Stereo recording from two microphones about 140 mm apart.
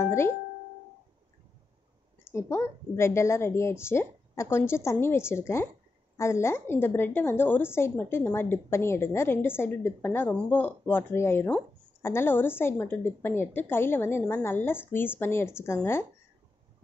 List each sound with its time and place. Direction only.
0.0 s speech: 20° left (ahead or behind)
2.3 s a woman's voice: 20° left (ahead or behind)